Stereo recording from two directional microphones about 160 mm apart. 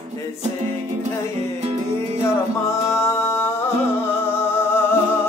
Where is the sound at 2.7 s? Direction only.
15° left (ahead or behind).